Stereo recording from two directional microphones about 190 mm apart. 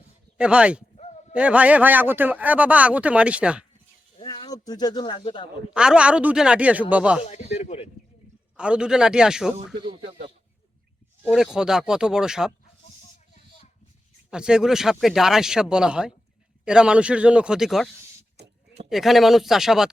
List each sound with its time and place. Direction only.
0.3 s a man's voice: 5° right (ahead or behind)
4.2 s speech: 20° left (ahead or behind)
5.7 s speech: 5° right (ahead or behind)
7.2 s a sound: 35° left (ahead or behind)
8.5 s speech: 5° right (ahead or behind)
10.1 s a sound: 30° right (ahead or behind)
11.3 s speech: centre (ahead or behind)
14.3 s speech: 5° right (ahead or behind)